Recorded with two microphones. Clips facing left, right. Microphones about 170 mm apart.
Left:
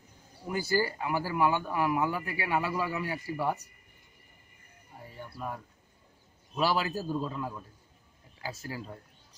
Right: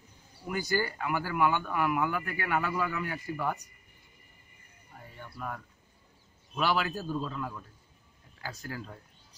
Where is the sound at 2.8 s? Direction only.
30° left (ahead or behind).